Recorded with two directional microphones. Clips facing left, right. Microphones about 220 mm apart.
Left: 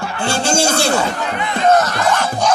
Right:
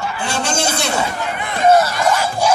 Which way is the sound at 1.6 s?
10° right (ahead or behind).